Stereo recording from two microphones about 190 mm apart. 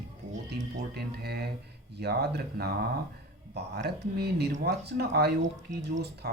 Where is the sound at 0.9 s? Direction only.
55° right (ahead or behind).